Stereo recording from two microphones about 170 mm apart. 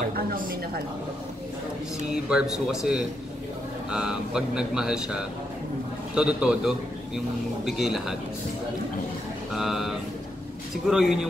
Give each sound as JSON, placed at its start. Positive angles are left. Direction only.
{"t": 0.1, "sound": "a sound", "side_deg": -60}
{"t": 2.2, "sound": "speech", "side_deg": -5}
{"t": 9.5, "sound": "speech", "side_deg": 0}